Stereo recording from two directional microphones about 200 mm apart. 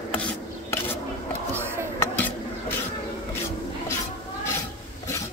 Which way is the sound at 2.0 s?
10° left (ahead or behind).